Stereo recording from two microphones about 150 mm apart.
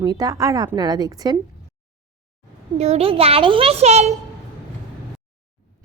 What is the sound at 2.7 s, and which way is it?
A child's voice, 45° right (ahead or behind).